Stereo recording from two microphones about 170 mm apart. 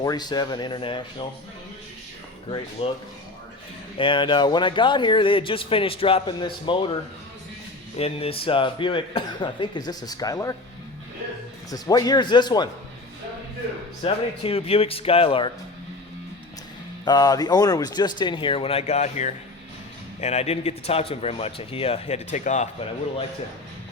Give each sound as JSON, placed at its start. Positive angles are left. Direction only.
{"t": 0.0, "sound": "a man's voice", "side_deg": 25}
{"t": 2.8, "sound": "a man's voice", "side_deg": 35}
{"t": 7.9, "sound": "a man's voice", "side_deg": 35}
{"t": 11.7, "sound": "a man's voice", "side_deg": 20}
{"t": 14.0, "sound": "a man's voice", "side_deg": 35}
{"t": 17.1, "sound": "a man's voice", "side_deg": 20}